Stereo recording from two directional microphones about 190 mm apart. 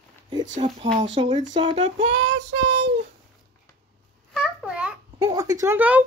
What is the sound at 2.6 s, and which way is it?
Speech, 35° right (ahead or behind).